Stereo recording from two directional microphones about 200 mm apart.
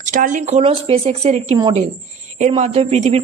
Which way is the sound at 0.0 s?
40° right (ahead or behind).